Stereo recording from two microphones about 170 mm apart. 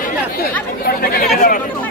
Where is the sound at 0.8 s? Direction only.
60° left (ahead or behind).